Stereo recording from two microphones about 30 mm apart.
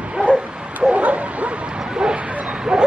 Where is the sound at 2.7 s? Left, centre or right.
Right.